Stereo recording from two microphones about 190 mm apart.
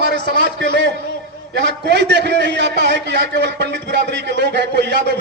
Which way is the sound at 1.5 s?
65° right (ahead or behind).